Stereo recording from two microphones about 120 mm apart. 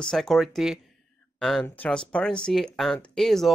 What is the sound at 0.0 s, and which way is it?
Speech, 5° left (ahead or behind).